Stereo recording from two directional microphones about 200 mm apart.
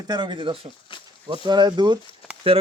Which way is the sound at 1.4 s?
20° right (ahead or behind).